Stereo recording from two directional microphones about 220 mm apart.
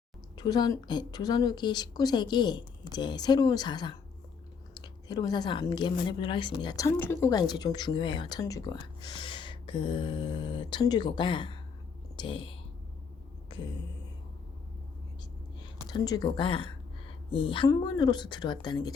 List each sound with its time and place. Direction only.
0.3 s a woman's voice: 20° left (ahead or behind)
15.6 s speech: 20° left (ahead or behind)